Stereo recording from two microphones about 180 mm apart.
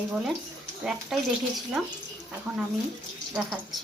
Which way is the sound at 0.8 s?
Centre (ahead or behind).